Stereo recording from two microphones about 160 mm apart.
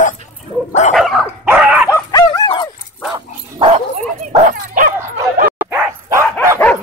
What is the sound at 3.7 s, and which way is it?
Dog, 50° right (ahead or behind).